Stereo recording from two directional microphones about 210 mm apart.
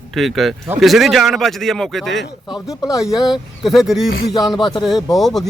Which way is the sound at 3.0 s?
Centre (ahead or behind).